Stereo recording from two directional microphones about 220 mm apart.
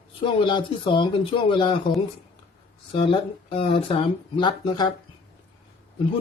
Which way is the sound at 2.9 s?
25° left (ahead or behind).